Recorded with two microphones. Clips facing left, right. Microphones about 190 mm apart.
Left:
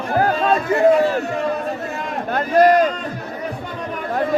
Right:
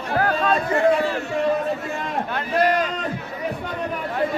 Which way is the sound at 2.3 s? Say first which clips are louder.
Left 8 dB; 45° left (ahead or behind).